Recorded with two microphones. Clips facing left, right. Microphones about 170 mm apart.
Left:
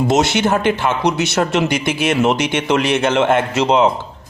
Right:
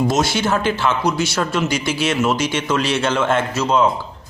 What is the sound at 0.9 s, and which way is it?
Speech, 55° left (ahead or behind).